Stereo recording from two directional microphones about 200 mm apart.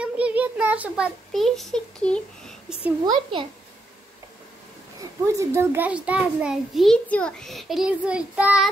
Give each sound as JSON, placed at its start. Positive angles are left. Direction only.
{"t": 0.0, "sound": "child singing", "side_deg": -5}
{"t": 3.1, "sound": "a child's voice", "side_deg": -25}
{"t": 5.2, "sound": "a child's voice", "side_deg": -15}